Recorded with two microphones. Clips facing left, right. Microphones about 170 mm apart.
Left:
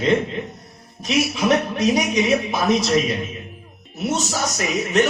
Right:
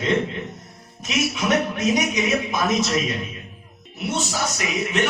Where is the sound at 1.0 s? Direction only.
35° left (ahead or behind).